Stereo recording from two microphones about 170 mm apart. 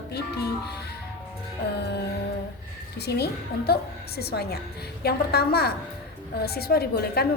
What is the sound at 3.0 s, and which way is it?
A woman's voice, 75° left (ahead or behind).